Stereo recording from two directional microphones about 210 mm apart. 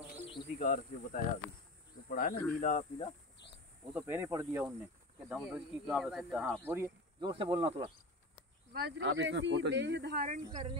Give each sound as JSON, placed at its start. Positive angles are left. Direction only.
{"t": 0.3, "sound": "insect", "side_deg": 25}
{"t": 0.7, "sound": "cricket", "side_deg": 40}
{"t": 2.0, "sound": "speech", "side_deg": 45}
{"t": 2.6, "sound": "cricket", "side_deg": 35}
{"t": 3.9, "sound": "speech", "side_deg": -10}
{"t": 5.3, "sound": "speech", "side_deg": 0}
{"t": 6.7, "sound": "speech", "side_deg": -15}
{"t": 8.7, "sound": "speech", "side_deg": -50}
{"t": 10.2, "sound": "speech", "side_deg": -35}